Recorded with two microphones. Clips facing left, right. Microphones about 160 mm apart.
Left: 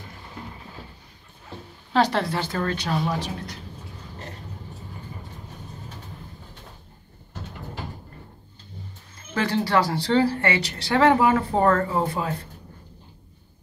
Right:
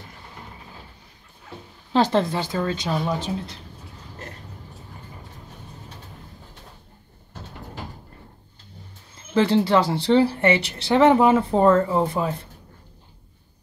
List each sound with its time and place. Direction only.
2.0 s speech: 20° right (ahead or behind)
9.3 s speech: 20° right (ahead or behind)